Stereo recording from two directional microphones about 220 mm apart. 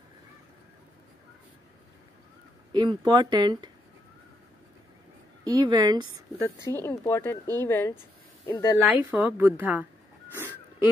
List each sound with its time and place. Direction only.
2.7 s speech: 20° right (ahead or behind)
5.4 s speech: 20° right (ahead or behind)
6.6 s speech: 10° left (ahead or behind)
8.8 s a woman's voice: 10° right (ahead or behind)
10.3 s wheeze: 10° right (ahead or behind)